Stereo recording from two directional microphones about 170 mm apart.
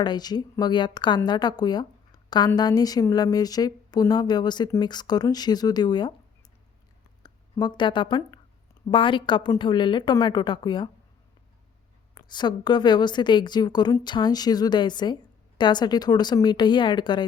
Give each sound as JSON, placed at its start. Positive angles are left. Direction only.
{"t": 0.0, "sound": "a woman's voice", "side_deg": 25}
{"t": 7.2, "sound": "a woman's voice", "side_deg": 25}
{"t": 12.1, "sound": "a woman's voice", "side_deg": 25}